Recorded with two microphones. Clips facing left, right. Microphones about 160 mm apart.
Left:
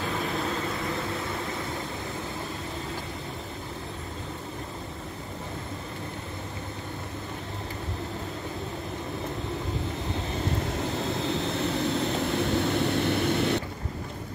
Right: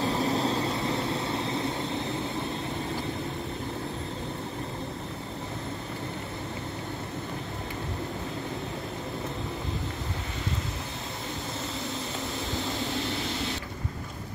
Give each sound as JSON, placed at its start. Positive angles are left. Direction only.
{"t": 0.0, "sound": "vehicle", "side_deg": -30}
{"t": 12.4, "sound": "vehicle", "side_deg": 60}